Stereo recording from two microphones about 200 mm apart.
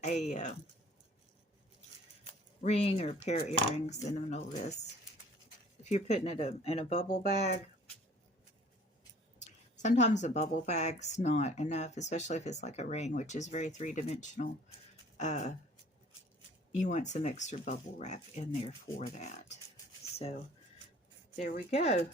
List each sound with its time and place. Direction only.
0.0 s speech: 35° left (ahead or behind)
2.6 s speech: 30° left (ahead or behind)
5.8 s speech: 35° left (ahead or behind)
9.8 s speech: 35° left (ahead or behind)
16.7 s speech: 35° left (ahead or behind)
21.3 s speech: 40° left (ahead or behind)